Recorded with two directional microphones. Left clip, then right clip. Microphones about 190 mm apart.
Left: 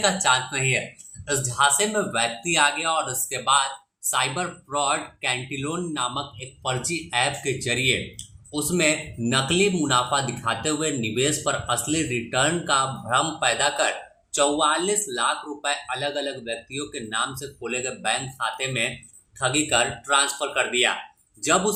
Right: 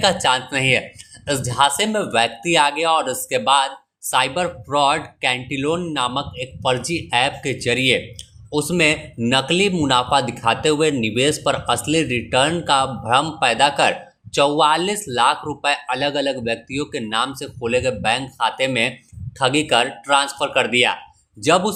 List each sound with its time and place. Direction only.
0.0 s speech: 45° right (ahead or behind)